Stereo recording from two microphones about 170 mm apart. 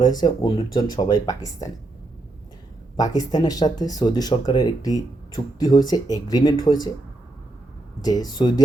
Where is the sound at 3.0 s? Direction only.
25° left (ahead or behind).